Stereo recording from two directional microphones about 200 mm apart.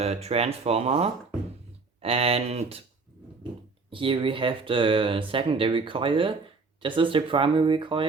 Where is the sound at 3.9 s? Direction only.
25° right (ahead or behind).